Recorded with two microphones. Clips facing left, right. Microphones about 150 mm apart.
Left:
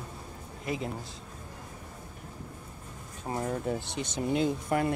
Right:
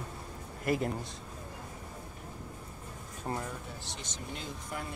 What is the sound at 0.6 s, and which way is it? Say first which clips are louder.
Speech: right 3 dB; centre (ahead or behind).